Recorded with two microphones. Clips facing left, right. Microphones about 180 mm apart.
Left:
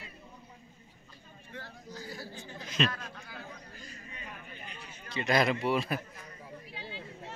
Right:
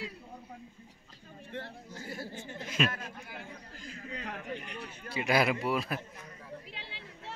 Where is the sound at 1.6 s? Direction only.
25° right (ahead or behind).